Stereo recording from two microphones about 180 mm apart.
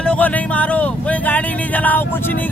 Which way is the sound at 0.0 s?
5° left (ahead or behind).